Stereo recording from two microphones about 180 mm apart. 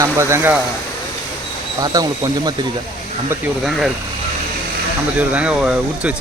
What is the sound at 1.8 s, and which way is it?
Speech, 20° right (ahead or behind).